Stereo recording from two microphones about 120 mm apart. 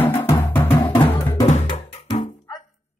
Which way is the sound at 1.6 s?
40° left (ahead or behind).